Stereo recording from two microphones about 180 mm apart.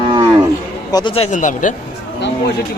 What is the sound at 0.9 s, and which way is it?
Speech, 30° left (ahead or behind).